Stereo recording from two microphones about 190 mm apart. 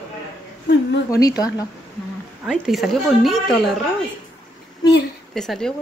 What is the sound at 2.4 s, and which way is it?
Speech, centre (ahead or behind).